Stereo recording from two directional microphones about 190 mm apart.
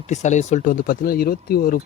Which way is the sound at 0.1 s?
40° left (ahead or behind).